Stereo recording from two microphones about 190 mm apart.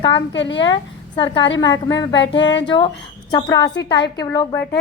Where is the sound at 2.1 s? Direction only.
70° left (ahead or behind).